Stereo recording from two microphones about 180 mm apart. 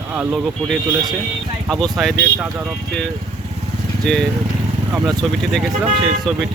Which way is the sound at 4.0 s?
5° left (ahead or behind).